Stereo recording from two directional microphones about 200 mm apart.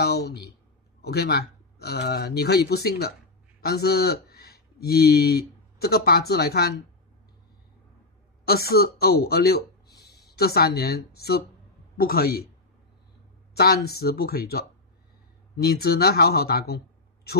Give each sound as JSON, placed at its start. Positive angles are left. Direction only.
{"t": 0.0, "sound": "speech", "side_deg": 55}
{"t": 8.5, "sound": "a woman's voice", "side_deg": 50}
{"t": 13.6, "sound": "speech", "side_deg": 55}